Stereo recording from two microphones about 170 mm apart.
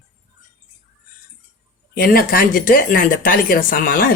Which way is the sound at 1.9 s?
60° left (ahead or behind).